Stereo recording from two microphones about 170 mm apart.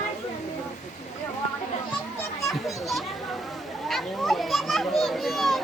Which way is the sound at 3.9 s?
Centre (ahead or behind).